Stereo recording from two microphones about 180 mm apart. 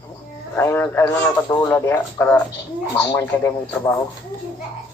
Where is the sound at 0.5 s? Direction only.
10° left (ahead or behind).